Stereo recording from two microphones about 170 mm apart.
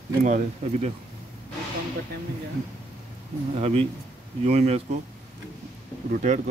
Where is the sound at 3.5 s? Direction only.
35° right (ahead or behind).